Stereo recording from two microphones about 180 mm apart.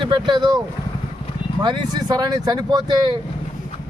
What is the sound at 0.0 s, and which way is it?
Speech, 25° right (ahead or behind).